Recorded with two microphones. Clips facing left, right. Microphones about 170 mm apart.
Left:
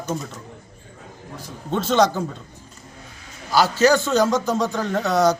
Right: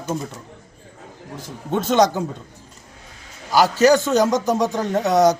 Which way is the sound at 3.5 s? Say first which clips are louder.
Right 2 dB; 15° right (ahead or behind).